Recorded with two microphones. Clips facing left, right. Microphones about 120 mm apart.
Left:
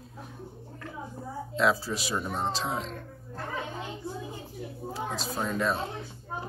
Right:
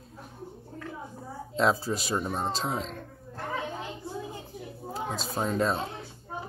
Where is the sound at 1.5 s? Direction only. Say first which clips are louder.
Right 1 dB; 40° right (ahead or behind).